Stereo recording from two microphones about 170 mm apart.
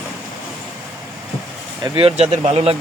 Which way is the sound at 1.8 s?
30° right (ahead or behind).